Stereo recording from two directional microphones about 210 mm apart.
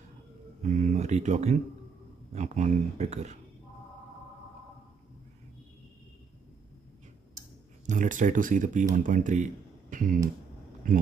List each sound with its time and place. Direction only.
0.6 s speech: 35° right (ahead or behind)
7.8 s speech: 35° right (ahead or behind)